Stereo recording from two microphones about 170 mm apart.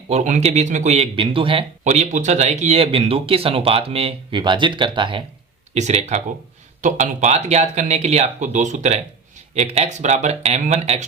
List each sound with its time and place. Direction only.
0.1 s speech: 40° right (ahead or behind)
1.8 s speech: 45° right (ahead or behind); by 5.2 s 30° right (ahead or behind)
5.7 s speech: 40° right (ahead or behind)